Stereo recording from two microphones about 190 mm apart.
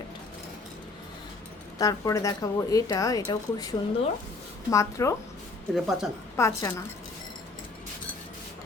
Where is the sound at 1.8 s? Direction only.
20° left (ahead or behind).